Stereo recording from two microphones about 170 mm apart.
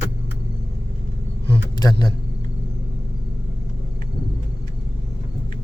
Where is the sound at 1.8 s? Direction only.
20° left (ahead or behind).